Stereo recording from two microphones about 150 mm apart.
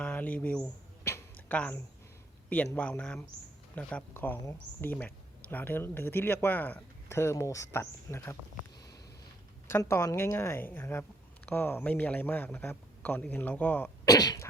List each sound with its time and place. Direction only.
0.0 s a sound: 10° left (ahead or behind)
2.5 s speech: 10° left (ahead or behind)
9.6 s speech: 15° left (ahead or behind)
14.0 s sneeze: 25° left (ahead or behind)